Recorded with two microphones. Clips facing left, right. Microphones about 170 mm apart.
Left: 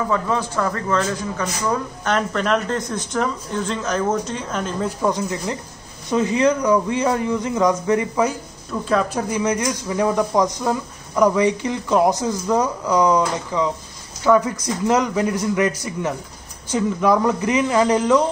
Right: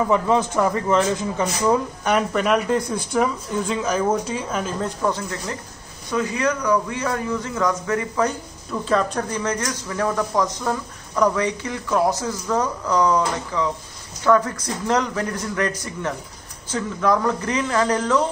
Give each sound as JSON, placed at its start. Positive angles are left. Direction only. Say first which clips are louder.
{"t": 0.1, "sound": "speech", "louder": "right 3 dB", "side_deg": -20}
{"t": 4.8, "sound": "speech", "louder": "left 3 dB", "side_deg": 15}
{"t": 8.8, "sound": "speech", "louder": "left 1 dB", "side_deg": 5}